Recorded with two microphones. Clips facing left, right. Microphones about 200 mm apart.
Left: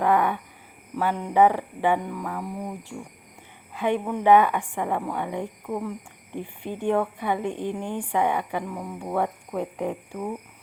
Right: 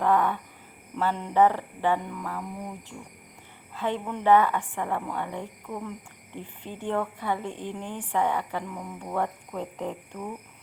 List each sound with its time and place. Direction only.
0.0 s a sound: 15° left (ahead or behind)
0.9 s speech: 10° left (ahead or behind)
3.8 s speech: 15° left (ahead or behind)